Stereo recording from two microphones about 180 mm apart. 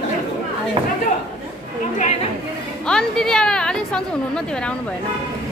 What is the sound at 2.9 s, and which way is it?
A woman's voice, 5° left (ahead or behind).